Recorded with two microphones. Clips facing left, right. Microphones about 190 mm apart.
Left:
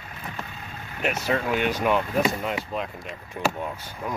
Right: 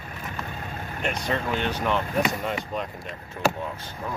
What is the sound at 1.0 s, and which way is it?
Speech, 5° left (ahead or behind).